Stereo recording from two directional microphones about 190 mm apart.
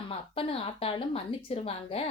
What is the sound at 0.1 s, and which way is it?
A woman's voice, 30° left (ahead or behind).